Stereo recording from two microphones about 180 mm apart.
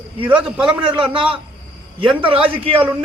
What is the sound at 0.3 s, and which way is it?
Speech, 5° right (ahead or behind).